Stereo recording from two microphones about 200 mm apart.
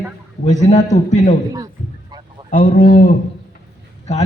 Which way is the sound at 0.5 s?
35° left (ahead or behind).